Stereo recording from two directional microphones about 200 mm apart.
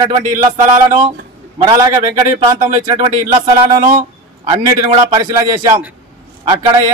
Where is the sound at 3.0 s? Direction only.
35° right (ahead or behind).